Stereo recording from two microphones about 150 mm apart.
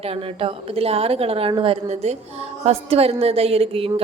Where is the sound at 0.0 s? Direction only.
40° right (ahead or behind).